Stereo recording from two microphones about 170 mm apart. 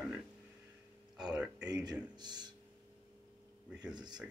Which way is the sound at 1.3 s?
5° right (ahead or behind).